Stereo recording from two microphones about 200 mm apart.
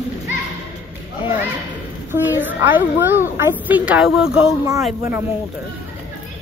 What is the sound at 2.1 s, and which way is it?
A child's voice, 10° right (ahead or behind).